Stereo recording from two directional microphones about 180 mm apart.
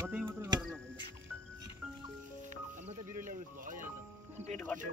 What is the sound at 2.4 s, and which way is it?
Speech, 40° right (ahead or behind).